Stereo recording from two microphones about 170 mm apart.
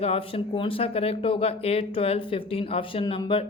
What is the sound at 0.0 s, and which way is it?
Speech, 35° left (ahead or behind).